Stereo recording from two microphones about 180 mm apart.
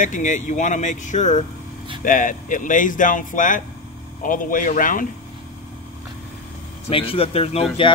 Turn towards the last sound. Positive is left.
turn(degrees=35)  # may be behind; listen again after turning